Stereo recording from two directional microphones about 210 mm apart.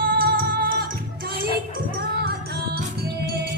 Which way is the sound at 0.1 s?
45° right (ahead or behind).